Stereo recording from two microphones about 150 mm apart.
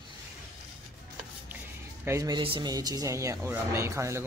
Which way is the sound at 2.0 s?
20° right (ahead or behind).